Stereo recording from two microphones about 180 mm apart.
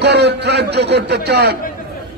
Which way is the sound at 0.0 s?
70° right (ahead or behind).